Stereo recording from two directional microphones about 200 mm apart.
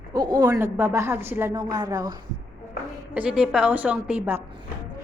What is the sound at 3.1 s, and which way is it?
A woman's voice, 5° right (ahead or behind).